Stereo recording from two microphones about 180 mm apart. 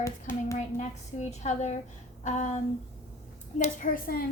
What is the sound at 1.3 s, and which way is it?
A woman's voice, 40° left (ahead or behind).